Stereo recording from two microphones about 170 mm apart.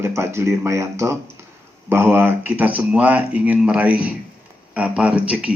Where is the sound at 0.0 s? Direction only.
15° right (ahead or behind).